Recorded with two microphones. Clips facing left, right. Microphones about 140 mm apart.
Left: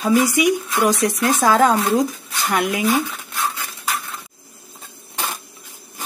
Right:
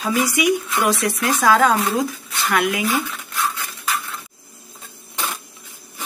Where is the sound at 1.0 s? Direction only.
30° left (ahead or behind).